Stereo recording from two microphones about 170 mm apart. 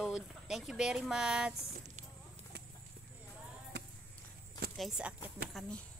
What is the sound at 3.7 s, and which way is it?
Basketball bounce, 90° right.